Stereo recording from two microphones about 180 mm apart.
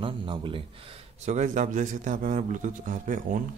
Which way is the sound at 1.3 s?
40° right (ahead or behind).